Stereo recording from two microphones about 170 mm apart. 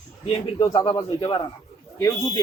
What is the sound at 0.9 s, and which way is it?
Speech, 25° left (ahead or behind).